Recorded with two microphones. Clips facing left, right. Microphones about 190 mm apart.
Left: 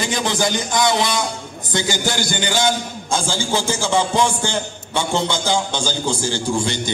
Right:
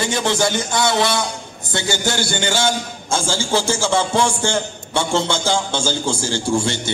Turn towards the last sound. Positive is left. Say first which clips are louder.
# right 1 dB
turn(degrees=15)  # may be behind; listen again after turning